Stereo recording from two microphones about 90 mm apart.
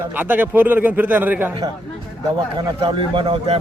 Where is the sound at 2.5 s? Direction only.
65° right (ahead or behind); by 3.6 s 85° right.